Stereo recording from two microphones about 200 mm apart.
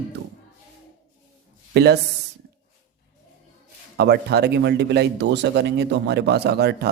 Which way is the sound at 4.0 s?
55° right (ahead or behind).